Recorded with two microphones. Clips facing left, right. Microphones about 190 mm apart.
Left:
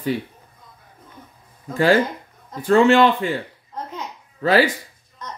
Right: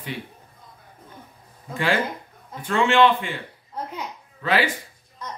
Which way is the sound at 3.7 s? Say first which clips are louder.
Even; 10° right (ahead or behind).